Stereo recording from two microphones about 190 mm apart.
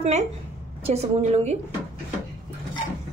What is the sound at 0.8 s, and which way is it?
Speech, 35° right (ahead or behind).